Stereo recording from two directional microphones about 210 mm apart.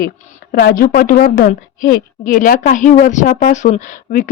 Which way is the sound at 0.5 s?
45° left (ahead or behind).